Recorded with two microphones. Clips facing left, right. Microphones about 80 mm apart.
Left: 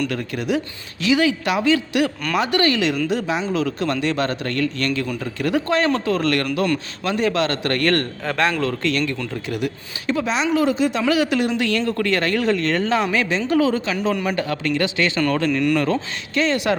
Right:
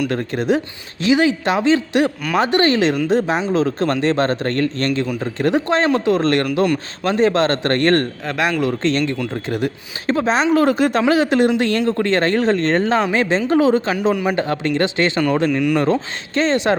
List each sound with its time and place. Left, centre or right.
0.1 s speech: right
11.0 s speech: right